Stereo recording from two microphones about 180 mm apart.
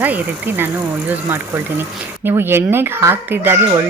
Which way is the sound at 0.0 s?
10° right (ahead or behind).